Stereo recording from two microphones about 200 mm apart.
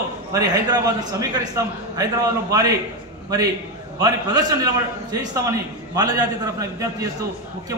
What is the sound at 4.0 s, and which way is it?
A man's voice, 20° right (ahead or behind).